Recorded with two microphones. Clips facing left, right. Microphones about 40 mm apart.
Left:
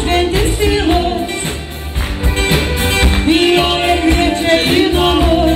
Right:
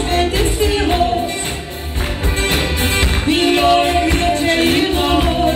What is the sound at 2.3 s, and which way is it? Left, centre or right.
Music, left.